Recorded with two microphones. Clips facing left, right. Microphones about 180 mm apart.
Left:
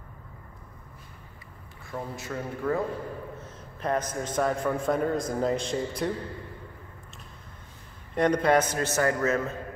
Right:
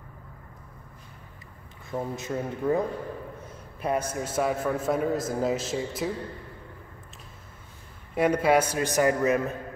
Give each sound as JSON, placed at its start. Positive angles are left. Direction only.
{"t": 1.9, "sound": "a man's voice", "side_deg": -20}
{"t": 8.1, "sound": "a man's voice", "side_deg": -5}